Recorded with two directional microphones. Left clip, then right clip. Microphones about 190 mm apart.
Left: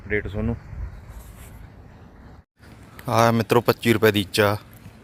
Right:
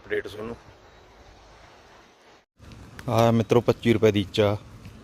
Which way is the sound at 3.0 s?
15° right (ahead or behind).